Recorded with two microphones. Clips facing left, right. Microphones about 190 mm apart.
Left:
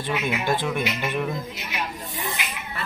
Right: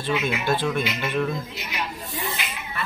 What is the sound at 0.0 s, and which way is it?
Speech, 15° left (ahead or behind).